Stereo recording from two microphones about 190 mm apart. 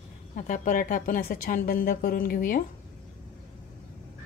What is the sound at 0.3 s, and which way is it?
A woman's voice, 45° left (ahead or behind).